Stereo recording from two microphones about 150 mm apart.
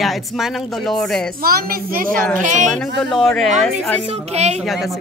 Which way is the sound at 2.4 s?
55° right (ahead or behind).